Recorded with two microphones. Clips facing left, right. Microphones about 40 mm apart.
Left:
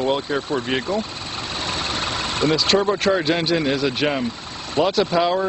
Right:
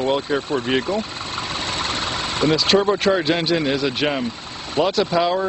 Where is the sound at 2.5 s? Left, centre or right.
Centre.